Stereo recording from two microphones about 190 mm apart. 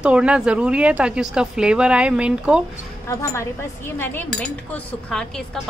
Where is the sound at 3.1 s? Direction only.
15° left (ahead or behind).